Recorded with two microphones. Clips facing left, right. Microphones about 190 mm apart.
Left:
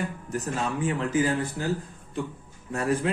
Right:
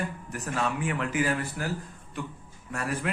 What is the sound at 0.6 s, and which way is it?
Speech, 30° left (ahead or behind).